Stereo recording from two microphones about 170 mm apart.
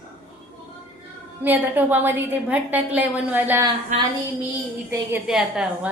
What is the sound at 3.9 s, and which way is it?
Speech, 45° right (ahead or behind).